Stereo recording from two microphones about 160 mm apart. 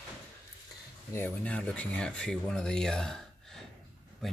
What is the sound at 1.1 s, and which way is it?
Speech, 10° left (ahead or behind).